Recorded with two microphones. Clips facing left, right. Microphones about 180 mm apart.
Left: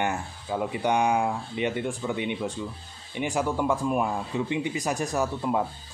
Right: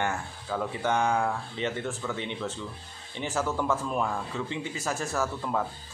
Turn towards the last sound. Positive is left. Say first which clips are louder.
# left 3 dB
turn(degrees=15)  # may be behind; listen again after turning